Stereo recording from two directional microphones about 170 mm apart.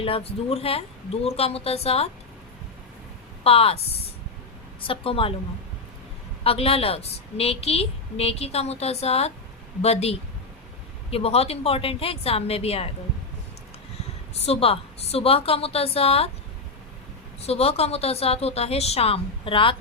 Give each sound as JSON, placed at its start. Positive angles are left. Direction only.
{"t": 0.0, "sound": "a woman's voice", "side_deg": 35}
{"t": 3.4, "sound": "a woman's voice", "side_deg": 35}
{"t": 6.4, "sound": "a woman's voice", "side_deg": 35}
{"t": 14.4, "sound": "a woman's voice", "side_deg": 35}
{"t": 17.4, "sound": "a woman's voice", "side_deg": 35}